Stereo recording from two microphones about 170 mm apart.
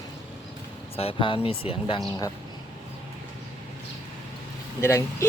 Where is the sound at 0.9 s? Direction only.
35° left (ahead or behind).